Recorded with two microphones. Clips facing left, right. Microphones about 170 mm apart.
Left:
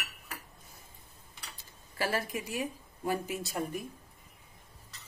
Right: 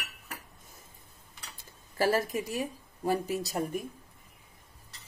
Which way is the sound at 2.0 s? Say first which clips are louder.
Right 6 dB; 40° right (ahead or behind).